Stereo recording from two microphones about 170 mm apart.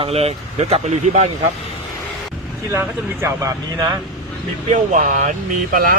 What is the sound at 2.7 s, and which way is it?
Speech, 15° right (ahead or behind).